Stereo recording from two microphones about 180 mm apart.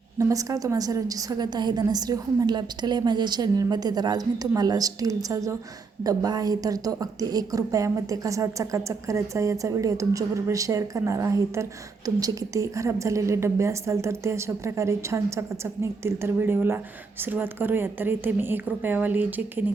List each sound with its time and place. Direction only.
0.2 s a woman's voice: 20° right (ahead or behind)